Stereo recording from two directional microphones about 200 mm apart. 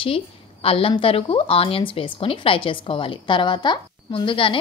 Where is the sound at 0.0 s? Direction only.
30° left (ahead or behind).